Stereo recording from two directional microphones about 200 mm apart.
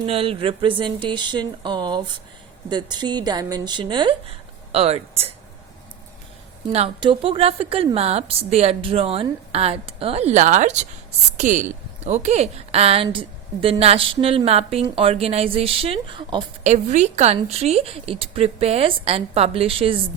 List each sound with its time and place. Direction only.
0.0 s speech: 25° right (ahead or behind)
6.7 s speech: 30° right (ahead or behind)
16.6 s a woman's voice: 35° right (ahead or behind)